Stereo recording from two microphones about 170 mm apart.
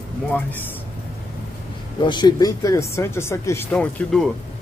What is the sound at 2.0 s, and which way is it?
Speech, 25° left (ahead or behind).